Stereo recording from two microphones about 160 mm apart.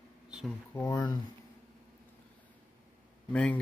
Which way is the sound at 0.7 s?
20° left (ahead or behind).